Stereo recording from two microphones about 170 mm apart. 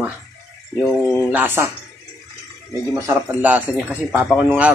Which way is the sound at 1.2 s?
10° right (ahead or behind).